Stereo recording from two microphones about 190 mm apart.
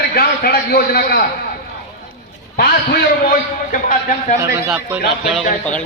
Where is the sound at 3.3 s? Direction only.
45° left (ahead or behind).